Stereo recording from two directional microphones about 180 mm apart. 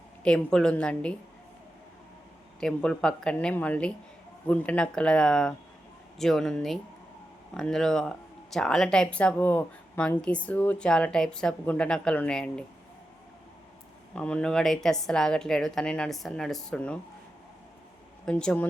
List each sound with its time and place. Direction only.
0.3 s speech: 5° left (ahead or behind)
2.6 s speech: 5° left (ahead or behind)
14.2 s speech: 5° left (ahead or behind)
18.3 s speech: 5° left (ahead or behind)